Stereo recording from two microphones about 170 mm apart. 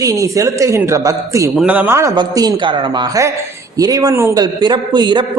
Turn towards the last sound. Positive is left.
turn(degrees=-25)  # may be behind; listen again after turning